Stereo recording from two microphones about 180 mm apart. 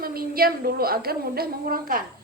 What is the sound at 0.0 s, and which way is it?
A woman's voice, 55° right (ahead or behind).